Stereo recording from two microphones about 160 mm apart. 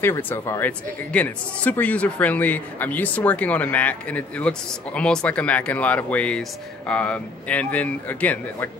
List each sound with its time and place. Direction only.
0.0 s speech: 15° left (ahead or behind)